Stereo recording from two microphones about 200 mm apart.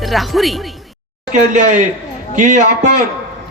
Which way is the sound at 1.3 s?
40° right (ahead or behind).